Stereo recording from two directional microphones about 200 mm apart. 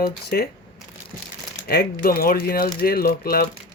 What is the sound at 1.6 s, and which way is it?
Speech, 50° left (ahead or behind).